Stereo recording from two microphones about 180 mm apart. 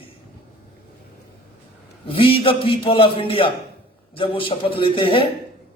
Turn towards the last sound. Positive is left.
turn(degrees=30)  # may be behind; listen again after turning